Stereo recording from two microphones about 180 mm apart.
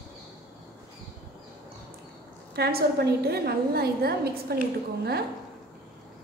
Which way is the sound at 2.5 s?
60° right (ahead or behind).